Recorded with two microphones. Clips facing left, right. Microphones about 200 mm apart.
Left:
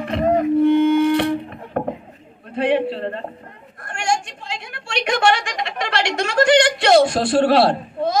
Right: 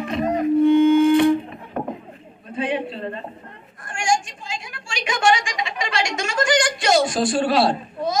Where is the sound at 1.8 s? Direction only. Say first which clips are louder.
Left 4 dB; 60° left (ahead or behind).